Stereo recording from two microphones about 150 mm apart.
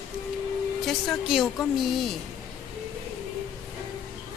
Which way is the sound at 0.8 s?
Centre (ahead or behind).